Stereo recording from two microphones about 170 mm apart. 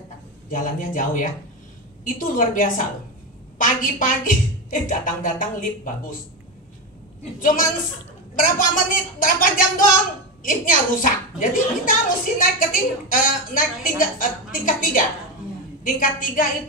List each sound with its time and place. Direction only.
0.5 s a woman's voice: 50° left (ahead or behind)
7.3 s a woman's voice: 50° left (ahead or behind)